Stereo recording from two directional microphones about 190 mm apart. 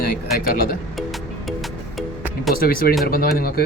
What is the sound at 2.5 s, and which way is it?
Speech, 50° left (ahead or behind).